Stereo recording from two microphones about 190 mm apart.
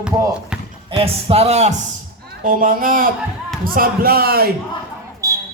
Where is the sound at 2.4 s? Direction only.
45° right (ahead or behind).